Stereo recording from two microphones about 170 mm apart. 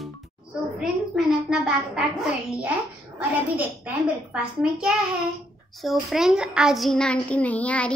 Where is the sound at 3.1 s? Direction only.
10° right (ahead or behind).